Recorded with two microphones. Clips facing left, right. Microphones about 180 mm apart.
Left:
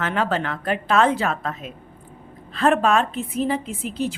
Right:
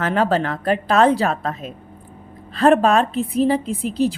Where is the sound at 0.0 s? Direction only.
40° right (ahead or behind).